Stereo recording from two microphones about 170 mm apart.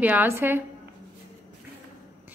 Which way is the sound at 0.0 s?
10° right (ahead or behind).